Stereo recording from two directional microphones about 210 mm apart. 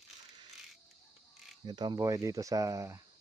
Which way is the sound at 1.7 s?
20° right (ahead or behind).